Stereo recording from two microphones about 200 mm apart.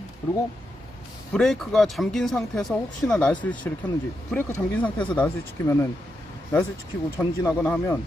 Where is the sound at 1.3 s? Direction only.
Centre (ahead or behind).